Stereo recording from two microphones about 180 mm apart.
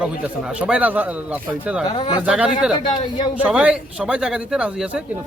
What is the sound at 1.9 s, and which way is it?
Speech, 25° left (ahead or behind).